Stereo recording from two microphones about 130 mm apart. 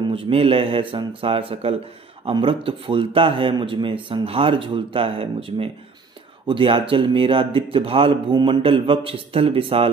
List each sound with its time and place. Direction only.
0.0 s speech: 45° right (ahead or behind)